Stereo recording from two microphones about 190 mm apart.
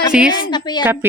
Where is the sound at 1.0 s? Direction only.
15° right (ahead or behind).